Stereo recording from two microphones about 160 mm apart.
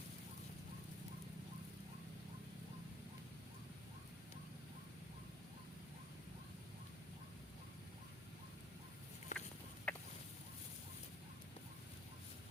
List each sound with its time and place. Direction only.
9.3 s chicken: 50° left (ahead or behind)
9.9 s chicken: 10° left (ahead or behind)